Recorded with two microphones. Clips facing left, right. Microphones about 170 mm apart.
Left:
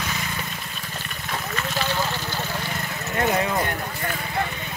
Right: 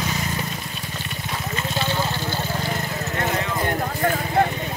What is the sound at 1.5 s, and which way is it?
Water, 25° right (ahead or behind).